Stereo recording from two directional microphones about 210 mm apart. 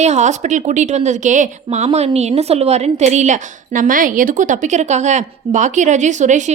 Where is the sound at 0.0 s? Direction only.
35° right (ahead or behind).